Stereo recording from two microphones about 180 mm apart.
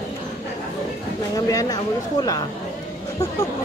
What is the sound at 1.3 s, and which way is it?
Speech, 20° left (ahead or behind).